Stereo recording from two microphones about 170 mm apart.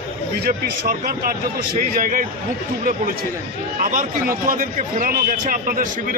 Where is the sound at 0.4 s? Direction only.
60° right (ahead or behind).